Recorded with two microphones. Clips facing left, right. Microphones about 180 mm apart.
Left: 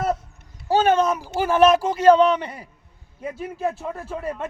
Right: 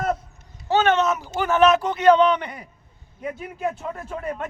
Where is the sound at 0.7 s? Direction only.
35° left (ahead or behind).